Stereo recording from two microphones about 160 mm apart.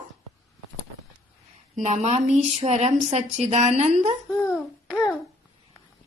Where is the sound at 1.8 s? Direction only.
45° right (ahead or behind).